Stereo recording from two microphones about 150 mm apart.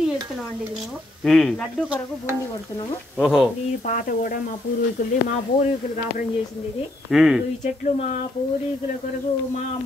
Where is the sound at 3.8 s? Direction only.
65° left (ahead or behind).